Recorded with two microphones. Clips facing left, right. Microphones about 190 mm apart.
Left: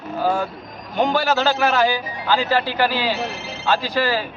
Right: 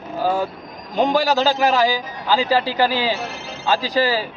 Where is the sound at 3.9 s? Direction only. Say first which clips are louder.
Right 2 dB; 15° right (ahead or behind).